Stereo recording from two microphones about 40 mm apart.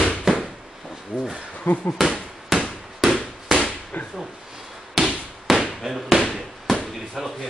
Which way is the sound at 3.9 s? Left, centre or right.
Left.